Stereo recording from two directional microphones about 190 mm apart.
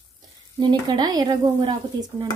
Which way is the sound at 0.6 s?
25° right (ahead or behind).